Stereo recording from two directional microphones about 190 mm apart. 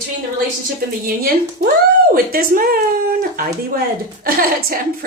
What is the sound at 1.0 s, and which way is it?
A woman's voice, 50° right (ahead or behind).